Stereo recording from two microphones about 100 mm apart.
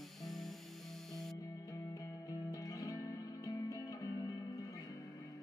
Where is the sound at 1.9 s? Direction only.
35° left (ahead or behind).